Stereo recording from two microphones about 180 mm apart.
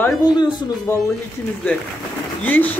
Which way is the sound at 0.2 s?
25° left (ahead or behind).